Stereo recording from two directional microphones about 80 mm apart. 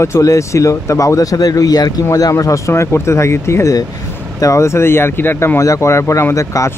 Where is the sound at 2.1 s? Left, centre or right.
Left.